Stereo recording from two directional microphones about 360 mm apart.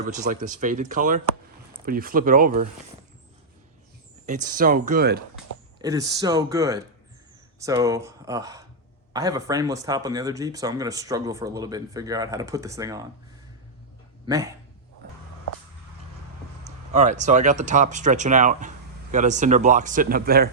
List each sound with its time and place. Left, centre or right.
0.0 s speech: right
4.3 s speech: right
5.8 s speech: centre
14.3 s speech: centre
16.6 s speech: centre